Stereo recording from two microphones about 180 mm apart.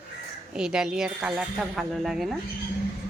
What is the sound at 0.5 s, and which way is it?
Speech, 5° right (ahead or behind).